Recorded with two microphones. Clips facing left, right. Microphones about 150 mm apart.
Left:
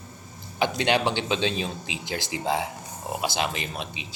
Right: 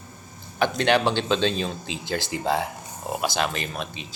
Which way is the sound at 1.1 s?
15° left (ahead or behind).